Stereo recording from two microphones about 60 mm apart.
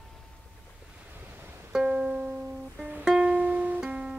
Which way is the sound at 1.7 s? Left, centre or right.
Centre.